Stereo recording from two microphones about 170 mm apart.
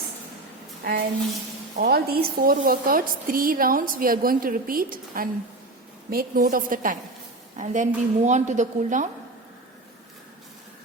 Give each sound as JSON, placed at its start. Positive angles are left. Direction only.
{"t": 1.7, "sound": "a woman's voice", "side_deg": -60}